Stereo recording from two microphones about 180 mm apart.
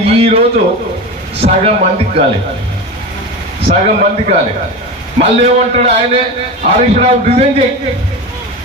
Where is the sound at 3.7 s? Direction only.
40° right (ahead or behind).